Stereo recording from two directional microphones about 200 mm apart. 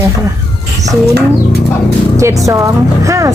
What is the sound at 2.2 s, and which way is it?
Speech, 15° right (ahead or behind).